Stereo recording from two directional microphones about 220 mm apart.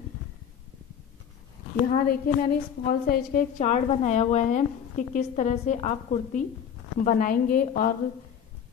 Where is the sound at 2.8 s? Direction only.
40° left (ahead or behind).